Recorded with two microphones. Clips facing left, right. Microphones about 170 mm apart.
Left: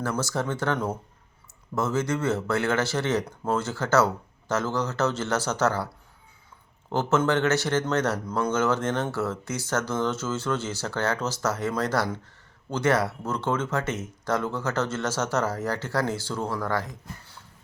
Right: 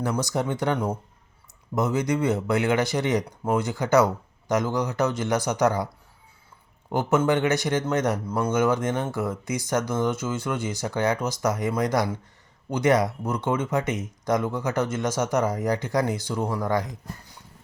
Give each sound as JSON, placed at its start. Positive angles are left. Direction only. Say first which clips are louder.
{"t": 0.0, "sound": "speech", "louder": "right 2 dB", "side_deg": -15}
{"t": 6.9, "sound": "speech", "louder": "right 1 dB", "side_deg": -15}